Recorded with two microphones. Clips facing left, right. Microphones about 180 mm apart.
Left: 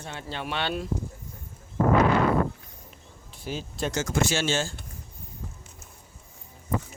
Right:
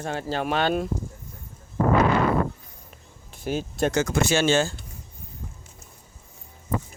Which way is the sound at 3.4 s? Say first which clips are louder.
Right 6 dB; 50° right (ahead or behind).